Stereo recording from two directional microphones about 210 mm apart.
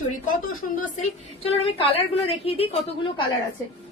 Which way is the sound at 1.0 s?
30° left (ahead or behind).